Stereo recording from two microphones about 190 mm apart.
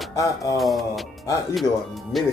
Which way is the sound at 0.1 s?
15° left (ahead or behind).